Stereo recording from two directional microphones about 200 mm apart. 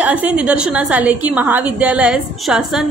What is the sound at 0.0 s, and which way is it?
A woman's voice, 5° right (ahead or behind).